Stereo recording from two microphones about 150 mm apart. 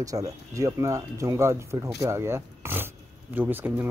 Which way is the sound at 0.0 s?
20° right (ahead or behind).